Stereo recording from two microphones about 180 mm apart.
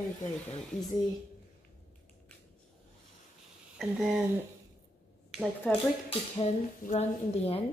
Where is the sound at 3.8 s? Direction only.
Centre (ahead or behind).